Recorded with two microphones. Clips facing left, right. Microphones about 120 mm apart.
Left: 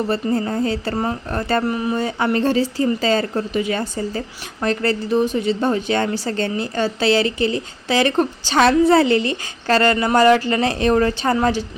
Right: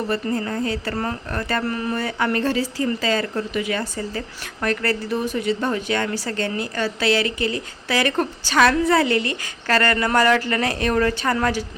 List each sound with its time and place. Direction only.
0.1 s a woman's voice: 30° left (ahead or behind)
1.6 s a woman's voice: 15° left (ahead or behind)